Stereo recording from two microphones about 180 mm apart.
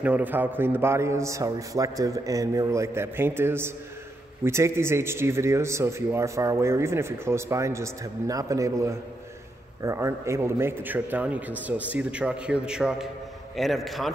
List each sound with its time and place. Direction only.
0.0 s a man's voice: 10° right (ahead or behind)